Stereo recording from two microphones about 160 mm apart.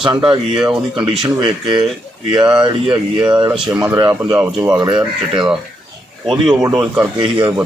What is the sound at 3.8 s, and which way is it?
Speech, 20° right (ahead or behind).